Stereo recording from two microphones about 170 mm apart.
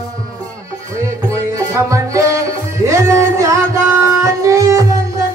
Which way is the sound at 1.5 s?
20° right (ahead or behind).